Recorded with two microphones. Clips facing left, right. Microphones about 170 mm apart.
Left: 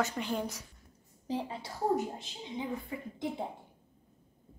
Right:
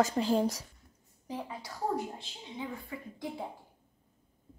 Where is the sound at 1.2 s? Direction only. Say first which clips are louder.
Left 4 dB; 25° left (ahead or behind).